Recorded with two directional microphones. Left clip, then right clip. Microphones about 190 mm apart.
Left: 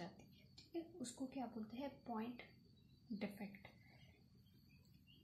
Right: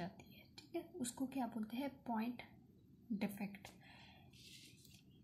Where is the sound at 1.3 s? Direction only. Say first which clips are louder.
Right 6 dB; 30° right (ahead or behind).